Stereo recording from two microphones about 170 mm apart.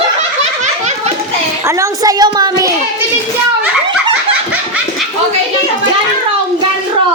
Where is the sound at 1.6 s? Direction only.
20° right (ahead or behind).